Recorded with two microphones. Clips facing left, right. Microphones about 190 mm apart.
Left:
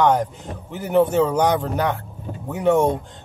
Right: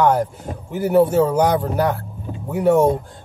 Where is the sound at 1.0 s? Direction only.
5° right (ahead or behind).